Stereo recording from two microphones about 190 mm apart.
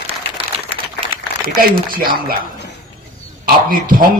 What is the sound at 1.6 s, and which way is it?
Speech, 50° right (ahead or behind).